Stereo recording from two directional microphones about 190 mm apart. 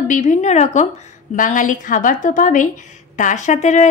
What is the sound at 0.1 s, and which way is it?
A woman's voice, 40° left (ahead or behind).